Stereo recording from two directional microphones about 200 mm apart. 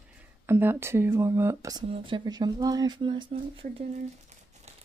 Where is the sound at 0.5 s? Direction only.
10° right (ahead or behind); by 3.8 s 25° right (ahead or behind).